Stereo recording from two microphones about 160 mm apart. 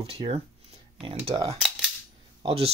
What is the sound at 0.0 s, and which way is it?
Speech, 40° right (ahead or behind).